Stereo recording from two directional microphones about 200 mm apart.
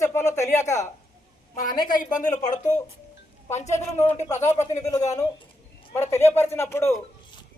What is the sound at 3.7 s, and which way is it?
Speech, 15° left (ahead or behind).